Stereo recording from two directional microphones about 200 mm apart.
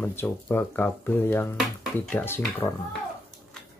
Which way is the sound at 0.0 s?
10° left (ahead or behind).